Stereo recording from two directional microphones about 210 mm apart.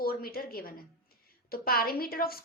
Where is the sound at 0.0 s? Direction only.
45° left (ahead or behind).